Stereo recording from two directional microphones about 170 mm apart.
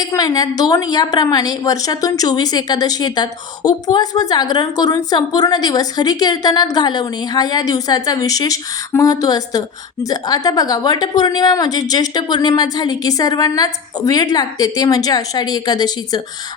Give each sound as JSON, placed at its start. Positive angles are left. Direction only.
{"t": 0.0, "sound": "a woman's voice", "side_deg": 20}